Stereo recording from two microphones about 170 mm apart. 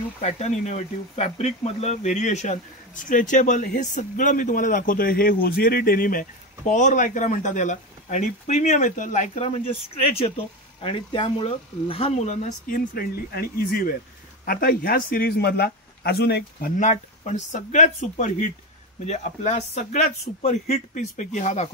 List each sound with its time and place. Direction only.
0.2 s speech: 40° left (ahead or behind)
12.6 s a man's voice: 60° left (ahead or behind)
16.7 s speech: 45° left (ahead or behind)